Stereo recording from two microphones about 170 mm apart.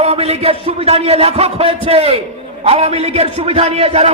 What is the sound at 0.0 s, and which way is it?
A man's voice, 40° right (ahead or behind).